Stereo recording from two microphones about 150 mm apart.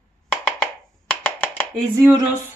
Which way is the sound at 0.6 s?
10° left (ahead or behind).